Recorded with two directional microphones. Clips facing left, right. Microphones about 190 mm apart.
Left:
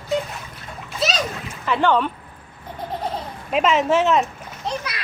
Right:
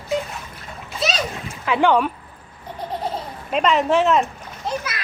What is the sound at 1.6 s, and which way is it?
Speech, 10° right (ahead or behind).